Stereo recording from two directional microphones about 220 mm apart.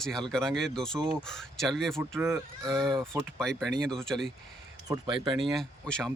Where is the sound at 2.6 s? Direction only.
Centre (ahead or behind).